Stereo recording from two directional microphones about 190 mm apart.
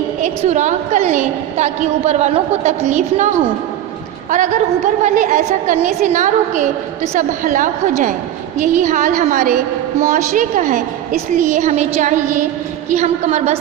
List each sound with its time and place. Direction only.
0.2 s a woman's voice: 40° right (ahead or behind)